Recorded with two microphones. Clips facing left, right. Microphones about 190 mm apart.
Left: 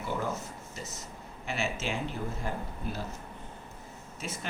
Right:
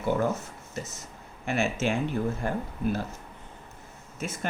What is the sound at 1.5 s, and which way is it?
Speech, 50° right (ahead or behind).